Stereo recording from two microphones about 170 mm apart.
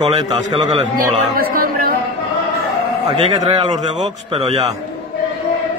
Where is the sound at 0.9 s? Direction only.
55° right (ahead or behind).